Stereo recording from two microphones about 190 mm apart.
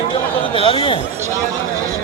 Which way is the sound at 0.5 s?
30° left (ahead or behind).